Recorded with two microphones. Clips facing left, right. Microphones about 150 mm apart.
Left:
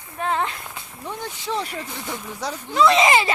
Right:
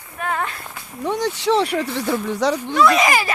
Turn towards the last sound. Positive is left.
turn(degrees=25)  # may be behind; listen again after turning